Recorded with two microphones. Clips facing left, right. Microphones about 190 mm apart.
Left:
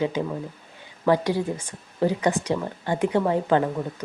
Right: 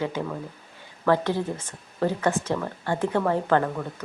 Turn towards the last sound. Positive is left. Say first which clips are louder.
# left 1 dB
turn(degrees=15)  # may be behind; listen again after turning